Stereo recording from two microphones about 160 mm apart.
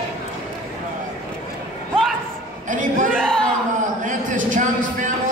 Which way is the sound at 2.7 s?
55° right (ahead or behind).